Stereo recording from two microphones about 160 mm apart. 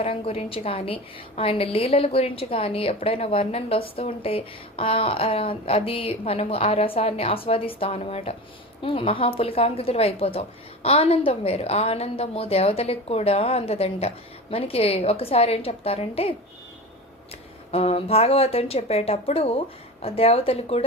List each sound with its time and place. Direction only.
0.0 s a woman's voice: 40° left (ahead or behind)
17.7 s a woman's voice: 40° left (ahead or behind)